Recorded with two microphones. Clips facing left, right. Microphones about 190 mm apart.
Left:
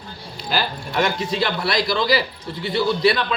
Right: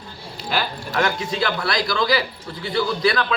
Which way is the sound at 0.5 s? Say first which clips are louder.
Left 1 dB; centre (ahead or behind).